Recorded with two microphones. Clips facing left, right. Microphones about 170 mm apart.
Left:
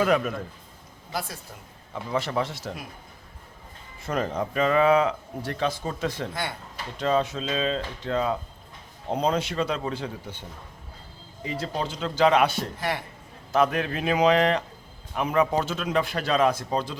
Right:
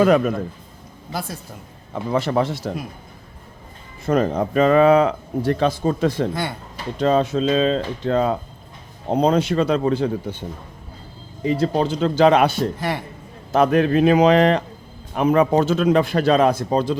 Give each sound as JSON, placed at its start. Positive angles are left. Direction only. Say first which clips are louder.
{"t": 0.0, "sound": "speech", "louder": "right 7 dB", "side_deg": -35}
{"t": 2.4, "sound": "speech", "louder": "right 8 dB", "side_deg": -35}
{"t": 4.0, "sound": "speech", "louder": "right 8 dB", "side_deg": -40}
{"t": 11.4, "sound": "speech", "louder": "right 11 dB", "side_deg": -35}